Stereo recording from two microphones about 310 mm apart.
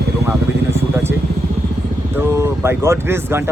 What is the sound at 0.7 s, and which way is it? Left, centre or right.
Vehicle, centre.